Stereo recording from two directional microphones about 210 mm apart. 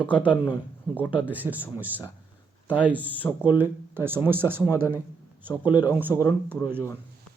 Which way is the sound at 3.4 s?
10° right (ahead or behind).